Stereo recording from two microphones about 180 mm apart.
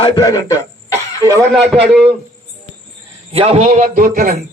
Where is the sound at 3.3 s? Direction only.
30° right (ahead or behind); by 4.3 s 50° right (ahead or behind).